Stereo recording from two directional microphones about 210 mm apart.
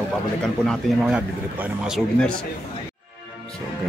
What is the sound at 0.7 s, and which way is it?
Speech, 5° right (ahead or behind).